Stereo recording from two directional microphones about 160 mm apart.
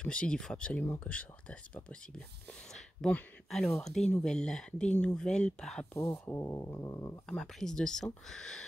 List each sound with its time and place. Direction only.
0.0 s speech: 5° left (ahead or behind)
7.2 s speech: 5° left (ahead or behind)